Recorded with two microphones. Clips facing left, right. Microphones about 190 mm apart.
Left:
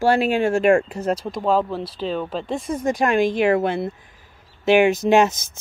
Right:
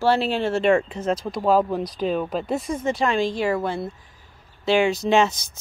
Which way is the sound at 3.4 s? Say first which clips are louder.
Left 5 dB; 60° left (ahead or behind).